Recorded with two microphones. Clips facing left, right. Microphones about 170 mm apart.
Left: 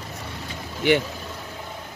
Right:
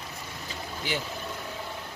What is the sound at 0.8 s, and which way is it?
Speech, 65° left (ahead or behind).